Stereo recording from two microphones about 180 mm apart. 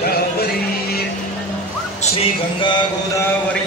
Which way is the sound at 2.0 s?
30° left (ahead or behind).